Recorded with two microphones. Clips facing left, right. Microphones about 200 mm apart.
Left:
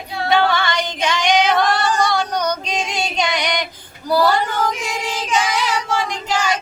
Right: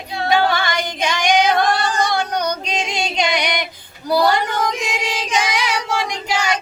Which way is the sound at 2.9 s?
10° right (ahead or behind).